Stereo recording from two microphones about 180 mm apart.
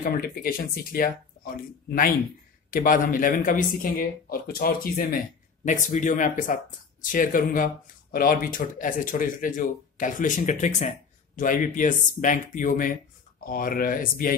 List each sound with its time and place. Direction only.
0.0 s speech: 55° left (ahead or behind)
5.7 s speech: 45° left (ahead or behind)